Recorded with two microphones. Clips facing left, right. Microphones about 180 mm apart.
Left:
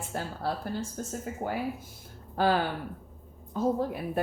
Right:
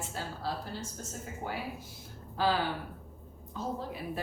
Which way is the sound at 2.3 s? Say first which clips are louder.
Left 4 dB; 50° left (ahead or behind).